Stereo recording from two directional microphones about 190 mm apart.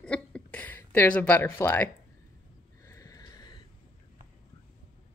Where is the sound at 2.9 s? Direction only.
15° left (ahead or behind).